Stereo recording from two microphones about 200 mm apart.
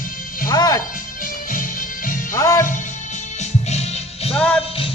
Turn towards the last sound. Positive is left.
turn(degrees=5)  # may be behind; listen again after turning